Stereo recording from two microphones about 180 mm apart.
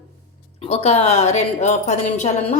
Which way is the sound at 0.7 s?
35° left (ahead or behind).